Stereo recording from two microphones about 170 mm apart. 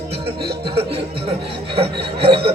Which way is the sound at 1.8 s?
35° right (ahead or behind).